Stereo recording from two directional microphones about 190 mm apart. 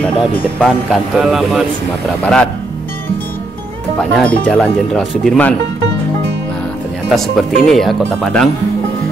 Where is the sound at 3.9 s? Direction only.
5° left (ahead or behind).